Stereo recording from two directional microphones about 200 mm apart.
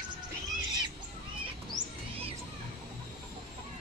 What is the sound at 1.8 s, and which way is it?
Music, 40° right (ahead or behind).